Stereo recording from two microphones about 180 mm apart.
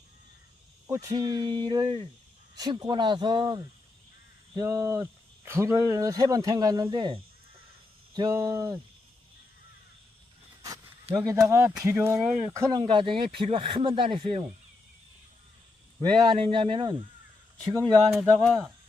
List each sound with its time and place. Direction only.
0.9 s speech: 20° right (ahead or behind)
11.1 s speech: 20° right (ahead or behind)
16.0 s speech: 30° right (ahead or behind)
18.1 s speech: centre (ahead or behind)